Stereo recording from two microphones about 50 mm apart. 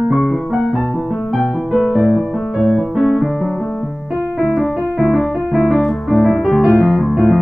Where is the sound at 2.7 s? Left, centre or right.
Centre.